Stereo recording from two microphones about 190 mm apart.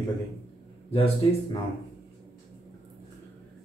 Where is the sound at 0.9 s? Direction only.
30° left (ahead or behind).